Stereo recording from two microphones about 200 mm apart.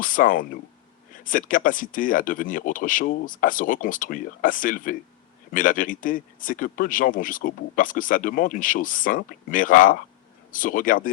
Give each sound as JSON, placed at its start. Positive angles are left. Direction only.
{"t": 0.0, "sound": "speech", "side_deg": 45}